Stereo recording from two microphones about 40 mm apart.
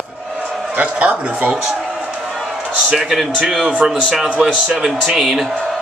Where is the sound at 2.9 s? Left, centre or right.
Centre.